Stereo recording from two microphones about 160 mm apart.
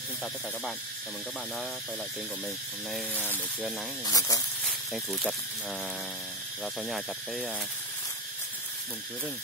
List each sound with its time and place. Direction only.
4.0 s speech: 20° left (ahead or behind)
4.6 s speech: centre (ahead or behind)
6.6 s speech: centre (ahead or behind)